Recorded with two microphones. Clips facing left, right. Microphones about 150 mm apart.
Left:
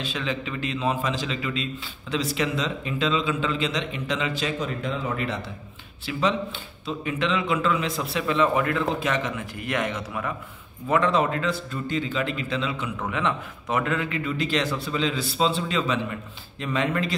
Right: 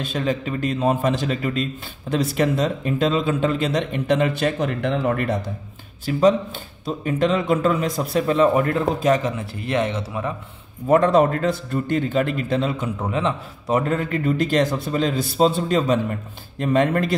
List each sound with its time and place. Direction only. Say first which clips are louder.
0.0 s a man's voice: right 6 dB; 45° right (ahead or behind)
6.1 s a man's voice: right 8 dB; 40° right (ahead or behind)
10.9 s a man's voice: right 6 dB; 45° right (ahead or behind)
13.0 s a man's voice: right 2 dB; 30° right (ahead or behind); by 17.1 s 50° right (ahead or behind)